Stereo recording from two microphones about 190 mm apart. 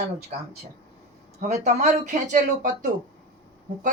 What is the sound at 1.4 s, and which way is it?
A woman's voice, 35° right (ahead or behind).